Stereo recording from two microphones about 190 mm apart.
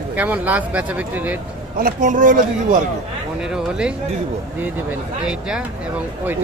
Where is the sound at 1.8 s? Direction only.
45° right (ahead or behind).